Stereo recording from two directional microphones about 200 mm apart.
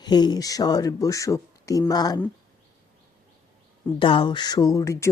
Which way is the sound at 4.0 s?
25° left (ahead or behind).